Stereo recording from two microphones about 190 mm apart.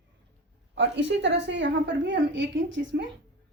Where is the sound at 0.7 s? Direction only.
70° right (ahead or behind).